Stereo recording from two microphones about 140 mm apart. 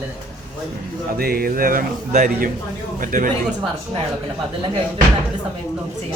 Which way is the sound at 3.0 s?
70° right (ahead or behind).